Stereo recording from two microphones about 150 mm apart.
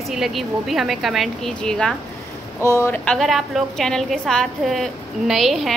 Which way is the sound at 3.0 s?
Centre (ahead or behind).